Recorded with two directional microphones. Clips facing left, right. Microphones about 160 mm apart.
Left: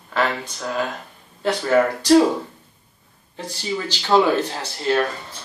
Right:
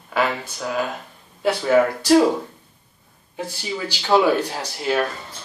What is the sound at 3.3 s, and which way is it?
Speech, 10° right (ahead or behind).